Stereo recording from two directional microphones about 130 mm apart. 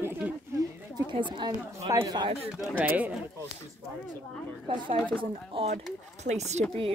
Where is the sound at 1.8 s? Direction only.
25° right (ahead or behind).